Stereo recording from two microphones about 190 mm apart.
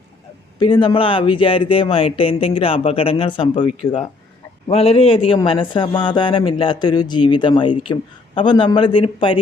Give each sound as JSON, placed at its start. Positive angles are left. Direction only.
{"t": 0.6, "sound": "a man's voice", "side_deg": 25}
{"t": 4.7, "sound": "a man's voice", "side_deg": 30}